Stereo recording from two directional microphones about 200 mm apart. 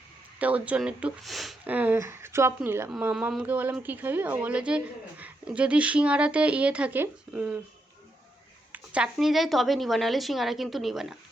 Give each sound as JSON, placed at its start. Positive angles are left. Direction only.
{"t": 0.3, "sound": "speech", "side_deg": -5}
{"t": 8.7, "sound": "speech", "side_deg": -5}